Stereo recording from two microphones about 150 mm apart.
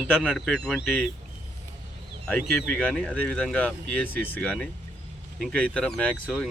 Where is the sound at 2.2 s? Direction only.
5° left (ahead or behind).